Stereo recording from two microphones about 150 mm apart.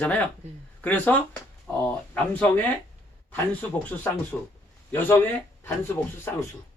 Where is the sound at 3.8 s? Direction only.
10° left (ahead or behind).